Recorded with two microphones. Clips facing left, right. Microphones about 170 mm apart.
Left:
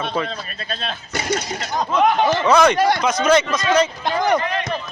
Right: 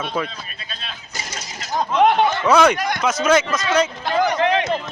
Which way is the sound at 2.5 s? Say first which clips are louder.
Even; 5° right (ahead or behind).